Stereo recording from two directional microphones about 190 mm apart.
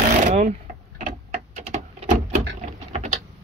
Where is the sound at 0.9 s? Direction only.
40° right (ahead or behind).